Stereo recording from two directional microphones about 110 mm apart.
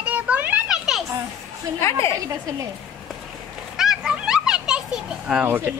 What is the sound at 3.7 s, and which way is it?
Children playing, 5° right (ahead or behind).